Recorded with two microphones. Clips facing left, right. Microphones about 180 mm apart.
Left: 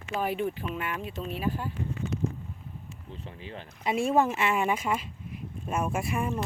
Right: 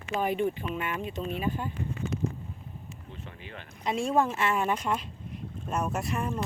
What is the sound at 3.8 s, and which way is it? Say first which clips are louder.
Speech: left 2 dB; 5° left (ahead or behind).